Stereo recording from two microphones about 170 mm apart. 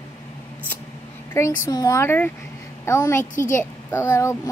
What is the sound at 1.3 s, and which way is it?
A woman's voice, 15° left (ahead or behind).